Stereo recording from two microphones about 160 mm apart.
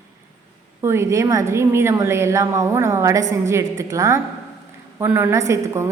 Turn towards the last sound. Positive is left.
turn(degrees=-20)  # may be behind; listen again after turning